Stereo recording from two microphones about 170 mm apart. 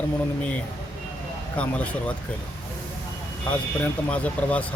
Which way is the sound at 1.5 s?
5° left (ahead or behind).